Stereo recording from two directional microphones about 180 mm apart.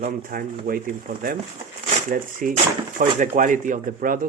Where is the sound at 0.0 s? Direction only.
50° right (ahead or behind).